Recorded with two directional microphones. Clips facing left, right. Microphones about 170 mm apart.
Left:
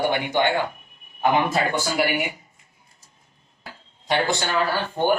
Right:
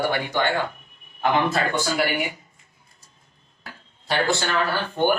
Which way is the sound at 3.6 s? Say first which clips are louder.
Left 1 dB; 25° left (ahead or behind).